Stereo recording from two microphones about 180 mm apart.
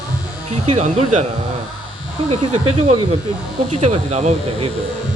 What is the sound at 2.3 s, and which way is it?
Speech, 35° right (ahead or behind).